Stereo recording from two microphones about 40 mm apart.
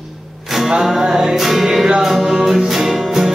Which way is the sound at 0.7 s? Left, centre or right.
Centre.